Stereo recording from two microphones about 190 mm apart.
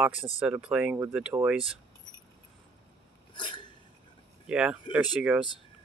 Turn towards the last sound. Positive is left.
turn(degrees=-5)  # may be behind; listen again after turning